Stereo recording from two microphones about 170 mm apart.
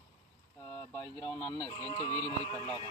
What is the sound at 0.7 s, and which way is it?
Speech, 15° left (ahead or behind).